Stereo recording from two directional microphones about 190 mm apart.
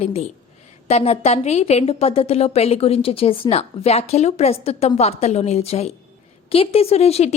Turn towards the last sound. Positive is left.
turn(degrees=35)  # may be behind; listen again after turning